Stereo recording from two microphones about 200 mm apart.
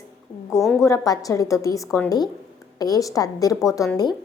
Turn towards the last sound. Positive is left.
turn(degrees=15)  # may be behind; listen again after turning